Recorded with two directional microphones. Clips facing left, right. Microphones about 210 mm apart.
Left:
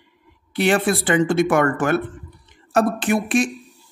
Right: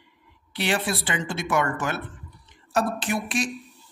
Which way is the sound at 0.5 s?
50° left (ahead or behind).